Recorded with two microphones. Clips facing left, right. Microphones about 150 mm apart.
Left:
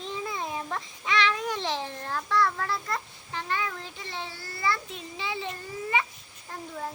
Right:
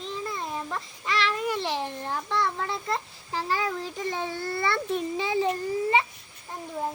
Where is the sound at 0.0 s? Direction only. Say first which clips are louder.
Even; centre (ahead or behind); by 5.5 s 45° right (ahead or behind).